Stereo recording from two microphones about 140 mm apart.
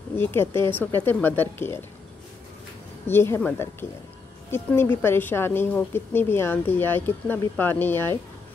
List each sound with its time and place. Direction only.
0.1 s a woman's voice: 15° left (ahead or behind)
3.1 s a woman's voice: 15° left (ahead or behind)